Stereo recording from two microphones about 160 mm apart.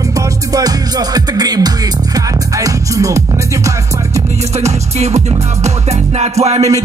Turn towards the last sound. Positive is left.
turn(degrees=-40)  # may be behind; listen again after turning